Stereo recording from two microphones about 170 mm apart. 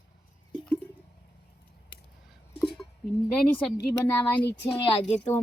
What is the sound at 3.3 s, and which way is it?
Speech, 5° left (ahead or behind).